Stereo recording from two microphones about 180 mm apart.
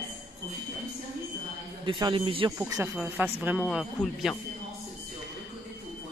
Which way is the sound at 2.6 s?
15° right (ahead or behind).